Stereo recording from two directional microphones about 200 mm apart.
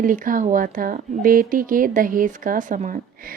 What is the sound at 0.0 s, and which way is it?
A woman's voice, 40° right (ahead or behind).